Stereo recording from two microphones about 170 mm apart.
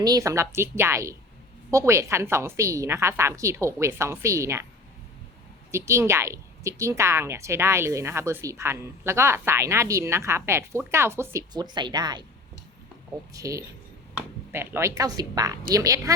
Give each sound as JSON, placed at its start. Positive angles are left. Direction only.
{"t": 0.0, "sound": "a woman's voice", "side_deg": -20}
{"t": 5.7, "sound": "a woman's voice", "side_deg": -15}
{"t": 13.3, "sound": "speech", "side_deg": -20}